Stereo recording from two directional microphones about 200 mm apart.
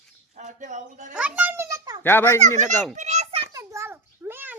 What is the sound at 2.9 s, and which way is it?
Children playing, 35° right (ahead or behind).